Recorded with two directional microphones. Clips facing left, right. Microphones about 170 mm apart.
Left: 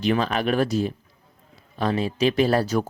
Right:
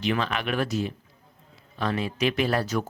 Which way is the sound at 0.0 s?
40° left (ahead or behind).